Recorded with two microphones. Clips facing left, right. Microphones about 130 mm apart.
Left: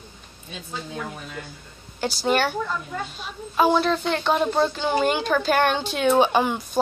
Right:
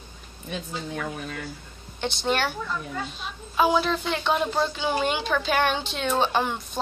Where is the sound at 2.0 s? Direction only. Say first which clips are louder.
Left 4 dB; 5° left (ahead or behind).